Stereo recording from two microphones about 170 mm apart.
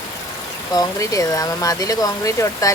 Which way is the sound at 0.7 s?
20° left (ahead or behind).